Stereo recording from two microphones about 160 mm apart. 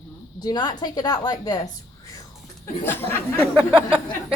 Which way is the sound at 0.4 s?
25° left (ahead or behind).